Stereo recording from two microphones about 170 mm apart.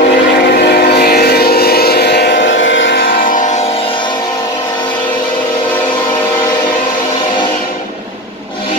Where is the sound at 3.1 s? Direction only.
55° left (ahead or behind).